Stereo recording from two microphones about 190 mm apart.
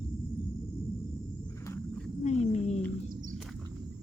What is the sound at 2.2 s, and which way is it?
Roaring cats, 35° left (ahead or behind).